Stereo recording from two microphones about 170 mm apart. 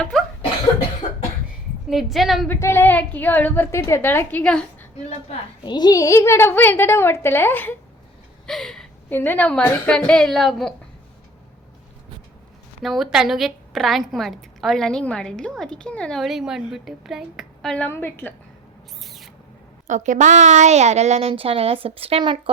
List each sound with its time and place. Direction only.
0.0 s a woman's voice: 5° left (ahead or behind)
1.9 s a woman's voice: centre (ahead or behind)
2.5 s a woman's voice: 15° left (ahead or behind)
5.6 s a woman's voice: 25° left (ahead or behind); by 10.8 s centre (ahead or behind)
12.8 s a woman's voice: centre (ahead or behind)
19.0 s owl: centre (ahead or behind)
19.9 s a woman's voice: 45° right (ahead or behind)